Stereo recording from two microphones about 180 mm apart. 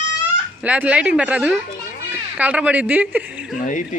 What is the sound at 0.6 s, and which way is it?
Speech, 5° right (ahead or behind).